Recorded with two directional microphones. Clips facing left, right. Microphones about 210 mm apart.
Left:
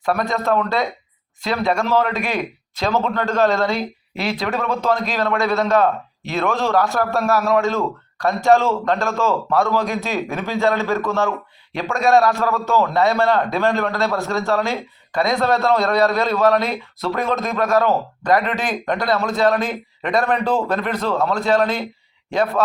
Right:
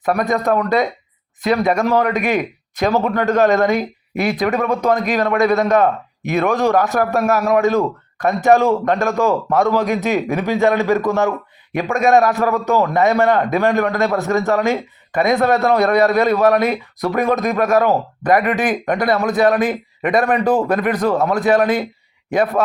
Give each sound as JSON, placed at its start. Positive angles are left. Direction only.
{"t": 0.0, "sound": "a man's voice", "side_deg": -20}